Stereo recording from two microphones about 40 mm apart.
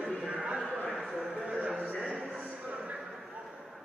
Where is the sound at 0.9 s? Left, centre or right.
Centre.